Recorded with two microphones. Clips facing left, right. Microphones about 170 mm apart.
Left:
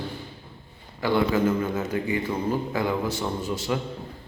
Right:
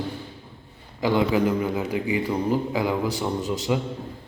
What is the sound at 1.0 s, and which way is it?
A man's voice, 15° right (ahead or behind).